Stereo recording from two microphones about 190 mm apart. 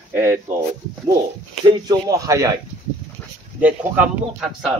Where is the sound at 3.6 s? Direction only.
10° right (ahead or behind).